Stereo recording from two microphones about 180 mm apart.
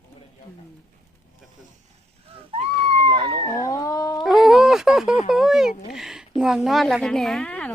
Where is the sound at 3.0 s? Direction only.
25° right (ahead or behind).